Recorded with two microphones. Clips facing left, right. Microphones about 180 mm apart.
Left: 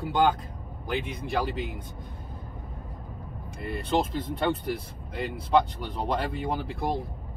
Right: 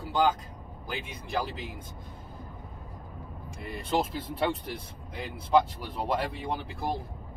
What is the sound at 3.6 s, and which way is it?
Speech, centre (ahead or behind).